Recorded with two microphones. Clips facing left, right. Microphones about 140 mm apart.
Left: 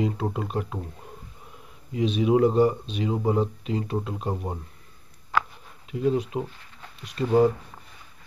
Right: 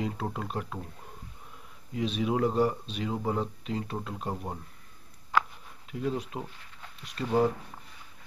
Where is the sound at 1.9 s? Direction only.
Centre (ahead or behind).